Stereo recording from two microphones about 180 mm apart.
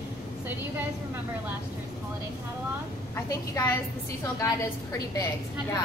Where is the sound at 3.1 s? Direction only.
15° left (ahead or behind).